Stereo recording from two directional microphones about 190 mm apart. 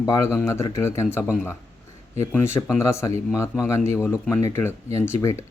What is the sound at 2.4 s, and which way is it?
Speech, 10° left (ahead or behind).